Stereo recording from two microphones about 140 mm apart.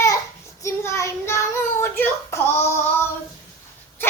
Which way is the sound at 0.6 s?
20° left (ahead or behind).